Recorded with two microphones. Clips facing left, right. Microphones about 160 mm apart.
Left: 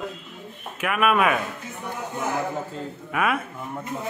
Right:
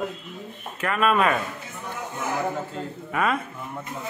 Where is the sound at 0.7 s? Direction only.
10° left (ahead or behind).